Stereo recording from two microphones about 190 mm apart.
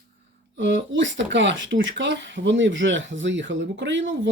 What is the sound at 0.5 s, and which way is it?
Speech, 70° right (ahead or behind).